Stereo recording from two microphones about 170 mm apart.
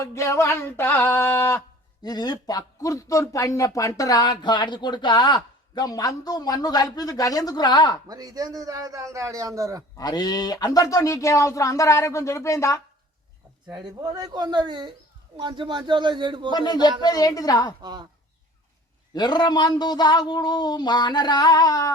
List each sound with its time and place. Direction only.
0.0 s a sound: 15° left (ahead or behind)
2.0 s speech: 25° left (ahead or behind)
8.0 s a man's voice: 20° right (ahead or behind)
10.0 s speech: 25° left (ahead or behind)
13.7 s a man's voice: 25° right (ahead or behind)
16.5 s speech: 25° left (ahead or behind)
19.1 s speech: 25° left (ahead or behind)